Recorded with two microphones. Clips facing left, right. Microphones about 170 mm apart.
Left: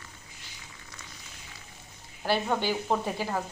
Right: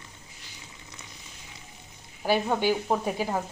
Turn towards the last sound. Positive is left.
turn(degrees=-15)  # may be behind; listen again after turning